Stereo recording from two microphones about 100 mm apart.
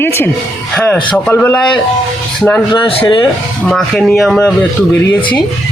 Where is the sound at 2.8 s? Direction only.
55° left (ahead or behind).